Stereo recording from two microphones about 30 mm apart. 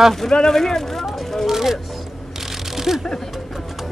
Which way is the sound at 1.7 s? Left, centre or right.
Centre.